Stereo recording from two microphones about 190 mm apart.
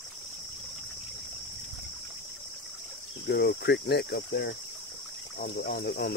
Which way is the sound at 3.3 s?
55° left (ahead or behind).